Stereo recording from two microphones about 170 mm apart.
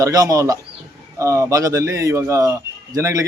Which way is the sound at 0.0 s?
20° right (ahead or behind).